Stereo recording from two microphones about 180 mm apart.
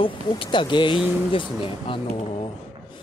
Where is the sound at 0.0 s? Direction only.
30° left (ahead or behind).